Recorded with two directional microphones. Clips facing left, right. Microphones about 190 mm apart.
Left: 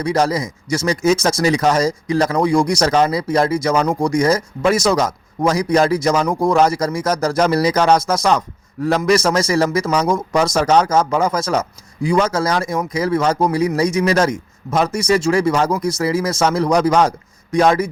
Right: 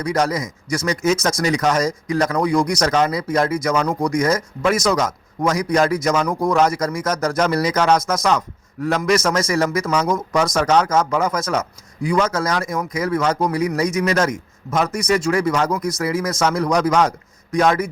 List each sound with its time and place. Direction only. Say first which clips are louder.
0.0 s a man's voice: left 3 dB; 30° left (ahead or behind)